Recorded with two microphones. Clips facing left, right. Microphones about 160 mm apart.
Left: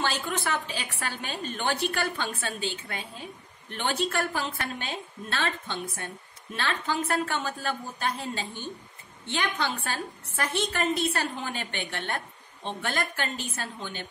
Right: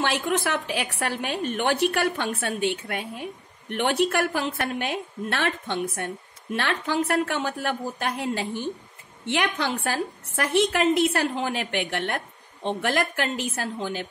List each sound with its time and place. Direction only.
0.0 s a woman's voice: 65° right (ahead or behind)